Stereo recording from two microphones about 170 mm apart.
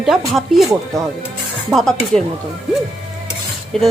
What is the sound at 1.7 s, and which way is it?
Speech, 5° left (ahead or behind).